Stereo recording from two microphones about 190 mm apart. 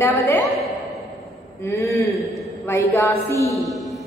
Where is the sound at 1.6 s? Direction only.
15° left (ahead or behind).